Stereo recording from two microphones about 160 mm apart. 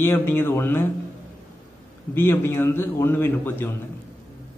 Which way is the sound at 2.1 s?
15° left (ahead or behind).